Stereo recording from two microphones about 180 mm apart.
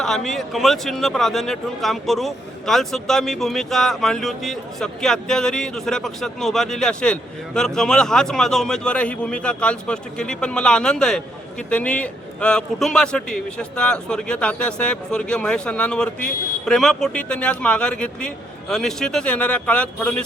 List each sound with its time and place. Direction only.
0.0 s a man's voice: centre (ahead or behind)